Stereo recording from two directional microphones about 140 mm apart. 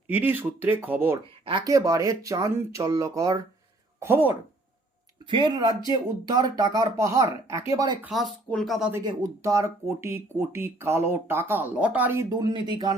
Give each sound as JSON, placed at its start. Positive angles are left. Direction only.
{"t": 0.1, "sound": "speech", "side_deg": -15}
{"t": 5.2, "sound": "speech", "side_deg": -35}
{"t": 8.0, "sound": "speech", "side_deg": 0}
{"t": 9.0, "sound": "speech", "side_deg": -25}
{"t": 12.3, "sound": "speech", "side_deg": -30}